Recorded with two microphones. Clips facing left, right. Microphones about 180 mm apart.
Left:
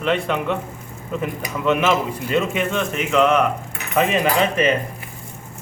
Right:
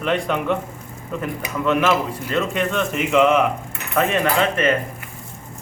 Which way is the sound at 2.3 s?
5° left (ahead or behind).